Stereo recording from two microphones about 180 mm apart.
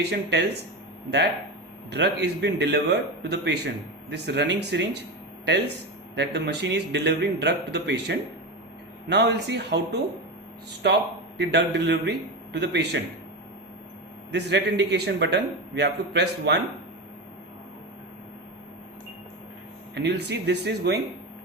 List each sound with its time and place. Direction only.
0.0 s a man's voice: 65° right (ahead or behind)
1.9 s a man's voice: 70° right (ahead or behind)
6.1 s a man's voice: 70° right (ahead or behind)
14.3 s a man's voice: 70° right (ahead or behind)
19.9 s a man's voice: 70° right (ahead or behind)